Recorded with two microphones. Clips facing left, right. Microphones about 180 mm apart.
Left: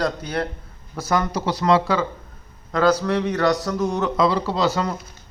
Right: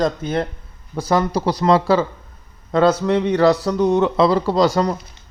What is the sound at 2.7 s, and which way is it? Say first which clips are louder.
A man's voice: right 3 dB; 25° right (ahead or behind).